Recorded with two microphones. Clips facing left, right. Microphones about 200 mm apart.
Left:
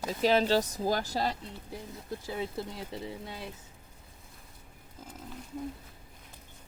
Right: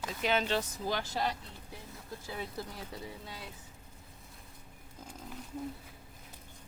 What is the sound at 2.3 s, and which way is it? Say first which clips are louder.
Speech: left 4 dB; 25° left (ahead or behind).